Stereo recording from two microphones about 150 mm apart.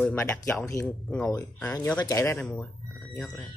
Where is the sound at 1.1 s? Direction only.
5° left (ahead or behind).